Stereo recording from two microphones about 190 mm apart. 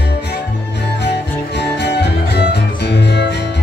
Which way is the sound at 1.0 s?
60° left (ahead or behind).